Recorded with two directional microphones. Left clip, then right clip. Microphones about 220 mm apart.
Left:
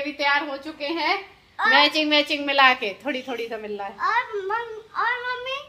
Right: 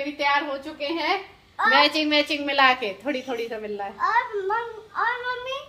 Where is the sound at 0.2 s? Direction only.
25° left (ahead or behind).